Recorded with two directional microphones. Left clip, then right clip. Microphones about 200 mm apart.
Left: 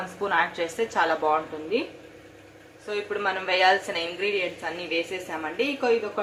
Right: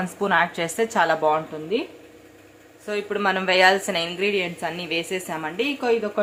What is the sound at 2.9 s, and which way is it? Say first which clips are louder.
A woman's voice: right 4 dB; 35° right (ahead or behind).